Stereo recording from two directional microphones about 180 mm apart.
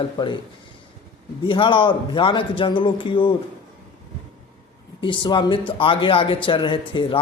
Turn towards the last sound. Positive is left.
turn(degrees=25)  # may be behind; listen again after turning